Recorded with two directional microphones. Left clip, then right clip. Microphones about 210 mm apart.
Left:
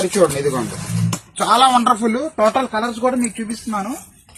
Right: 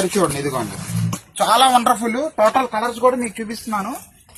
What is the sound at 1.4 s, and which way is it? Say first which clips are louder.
Speech: even; 50° right (ahead or behind).